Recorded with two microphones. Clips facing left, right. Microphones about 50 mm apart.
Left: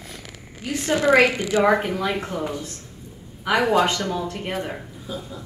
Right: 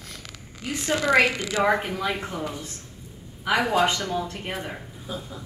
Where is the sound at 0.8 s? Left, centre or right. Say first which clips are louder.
Left 4 dB; left.